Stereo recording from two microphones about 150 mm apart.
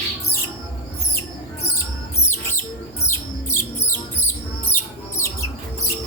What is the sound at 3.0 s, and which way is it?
Music, 15° left (ahead or behind).